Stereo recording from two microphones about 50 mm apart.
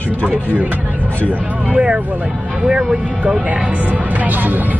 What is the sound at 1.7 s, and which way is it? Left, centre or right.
Speech, right.